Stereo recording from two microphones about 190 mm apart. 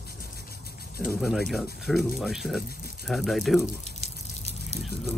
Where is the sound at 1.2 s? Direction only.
Centre (ahead or behind).